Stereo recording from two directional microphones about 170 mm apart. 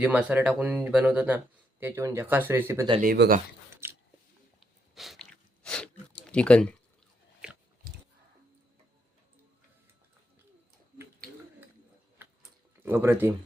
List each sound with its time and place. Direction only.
0.0 s speech: 10° right (ahead or behind)
3.0 s speech: 60° right (ahead or behind)
3.8 s a sound: 15° right (ahead or behind)
4.6 s biting: centre (ahead or behind)
6.2 s speech: 5° left (ahead or behind)
12.8 s speech: 15° right (ahead or behind)